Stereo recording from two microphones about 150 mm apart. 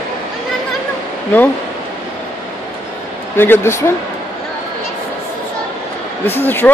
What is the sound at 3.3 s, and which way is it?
Speech, 15° left (ahead or behind).